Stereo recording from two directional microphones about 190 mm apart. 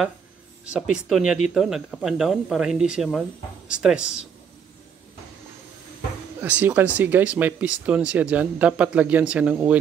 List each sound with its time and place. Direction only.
0.7 s speech: 5° right (ahead or behind)
6.4 s speech: 10° right (ahead or behind)